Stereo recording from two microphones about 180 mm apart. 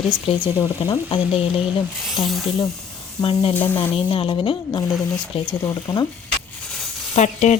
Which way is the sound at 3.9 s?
30° left (ahead or behind).